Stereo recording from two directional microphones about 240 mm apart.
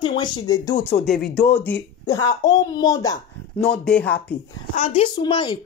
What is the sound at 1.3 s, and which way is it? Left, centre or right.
Speech, centre.